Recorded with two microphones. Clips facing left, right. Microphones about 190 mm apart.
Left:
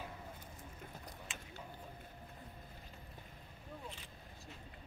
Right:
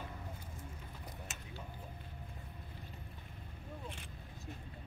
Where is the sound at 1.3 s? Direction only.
45° right (ahead or behind).